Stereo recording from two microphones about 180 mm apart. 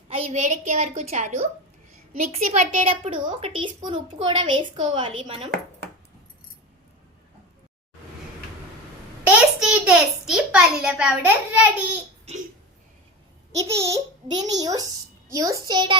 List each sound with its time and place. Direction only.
0.1 s a woman's voice: 35° right (ahead or behind)
9.2 s a child's voice: 5° right (ahead or behind)
13.6 s a woman's voice: 15° right (ahead or behind)